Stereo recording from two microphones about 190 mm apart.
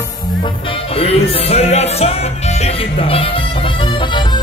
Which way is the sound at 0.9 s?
30° left (ahead or behind).